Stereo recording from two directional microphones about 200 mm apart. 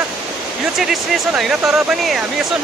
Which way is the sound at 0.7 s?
Centre (ahead or behind).